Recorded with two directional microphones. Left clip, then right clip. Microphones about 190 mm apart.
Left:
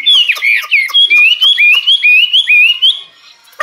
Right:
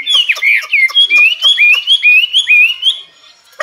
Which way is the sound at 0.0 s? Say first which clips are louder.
Left 2 dB; centre (ahead or behind).